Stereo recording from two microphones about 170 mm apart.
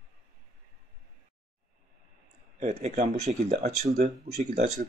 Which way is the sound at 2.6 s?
45° right (ahead or behind).